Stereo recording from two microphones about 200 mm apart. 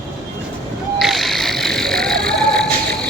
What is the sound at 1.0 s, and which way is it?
Vehicle, centre (ahead or behind).